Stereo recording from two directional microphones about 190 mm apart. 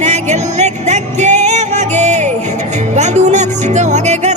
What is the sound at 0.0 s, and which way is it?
Music, 35° right (ahead or behind).